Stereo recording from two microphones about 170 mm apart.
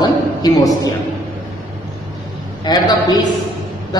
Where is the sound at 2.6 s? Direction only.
25° left (ahead or behind).